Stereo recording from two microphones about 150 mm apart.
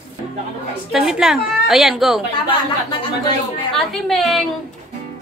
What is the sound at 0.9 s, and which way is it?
A woman's voice, centre (ahead or behind).